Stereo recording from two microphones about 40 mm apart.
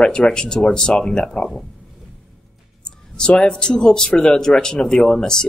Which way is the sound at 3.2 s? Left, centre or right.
Left.